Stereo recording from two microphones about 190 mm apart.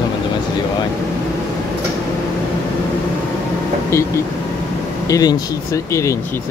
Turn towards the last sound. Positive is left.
turn(degrees=20)  # may be behind; listen again after turning